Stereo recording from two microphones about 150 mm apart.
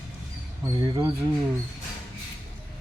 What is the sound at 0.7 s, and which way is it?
Speech, 30° right (ahead or behind).